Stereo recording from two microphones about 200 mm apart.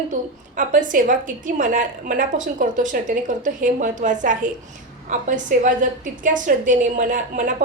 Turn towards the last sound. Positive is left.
turn(degrees=-40)  # may be behind; listen again after turning